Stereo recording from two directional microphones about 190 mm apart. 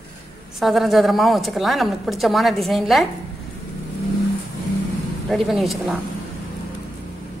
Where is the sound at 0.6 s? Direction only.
Centre (ahead or behind).